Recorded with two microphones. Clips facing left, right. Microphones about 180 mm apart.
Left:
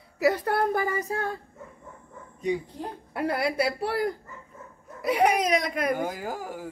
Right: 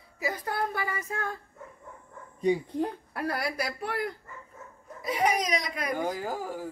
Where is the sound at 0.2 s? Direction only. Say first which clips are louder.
Left 8 dB; 70° left (ahead or behind).